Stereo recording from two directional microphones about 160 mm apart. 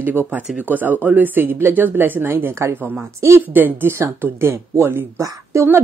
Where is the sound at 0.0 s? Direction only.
15° right (ahead or behind).